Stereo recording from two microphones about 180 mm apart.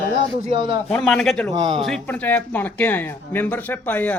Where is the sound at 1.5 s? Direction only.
30° right (ahead or behind).